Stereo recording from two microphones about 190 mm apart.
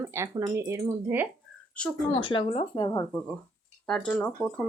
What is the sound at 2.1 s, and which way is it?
Speech, 25° left (ahead or behind).